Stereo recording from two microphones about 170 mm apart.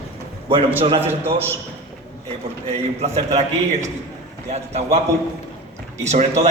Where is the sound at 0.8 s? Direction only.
35° right (ahead or behind).